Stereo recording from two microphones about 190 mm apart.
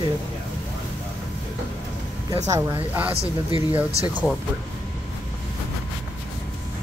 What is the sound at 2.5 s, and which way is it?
Speech, 15° right (ahead or behind).